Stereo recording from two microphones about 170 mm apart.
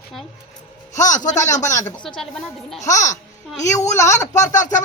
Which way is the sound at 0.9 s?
50° left (ahead or behind).